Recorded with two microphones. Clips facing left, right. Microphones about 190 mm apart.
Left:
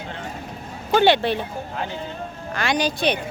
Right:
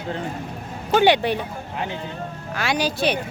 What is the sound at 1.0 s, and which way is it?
Speech, 15° right (ahead or behind).